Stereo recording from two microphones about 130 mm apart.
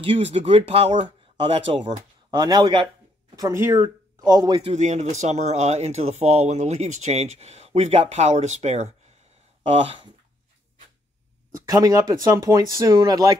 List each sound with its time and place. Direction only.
0.0 s speech: 50° right (ahead or behind)
2.3 s a man's voice: 35° right (ahead or behind)
3.3 s speech: 20° right (ahead or behind)
4.2 s a man's voice: 30° right (ahead or behind)
4.7 s speech: 60° right (ahead or behind)
9.6 s speech: 45° right (ahead or behind)
11.5 s speech: 25° right (ahead or behind)